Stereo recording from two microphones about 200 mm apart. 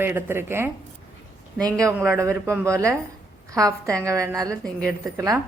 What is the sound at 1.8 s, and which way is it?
A woman's voice, 10° right (ahead or behind).